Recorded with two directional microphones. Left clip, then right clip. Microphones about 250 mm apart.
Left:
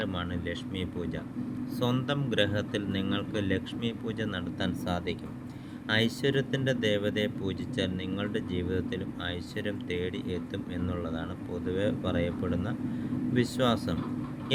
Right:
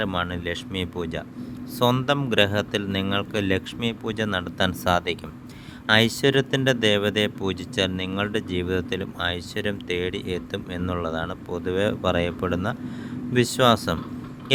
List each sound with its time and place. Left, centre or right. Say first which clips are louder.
0.0 s speech: right 8 dB; right